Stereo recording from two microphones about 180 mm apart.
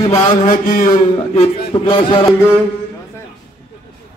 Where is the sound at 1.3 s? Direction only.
30° left (ahead or behind).